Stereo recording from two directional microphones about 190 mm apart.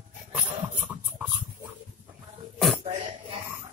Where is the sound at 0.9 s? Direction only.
Centre (ahead or behind).